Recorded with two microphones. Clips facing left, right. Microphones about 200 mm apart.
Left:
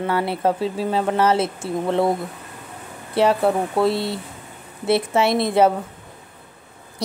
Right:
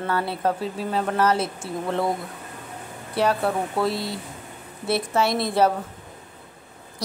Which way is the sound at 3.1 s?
25° left (ahead or behind).